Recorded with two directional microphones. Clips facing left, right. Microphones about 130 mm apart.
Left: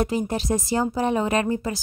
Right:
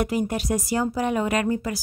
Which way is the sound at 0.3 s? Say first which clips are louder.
Left 1 dB; 25° left (ahead or behind).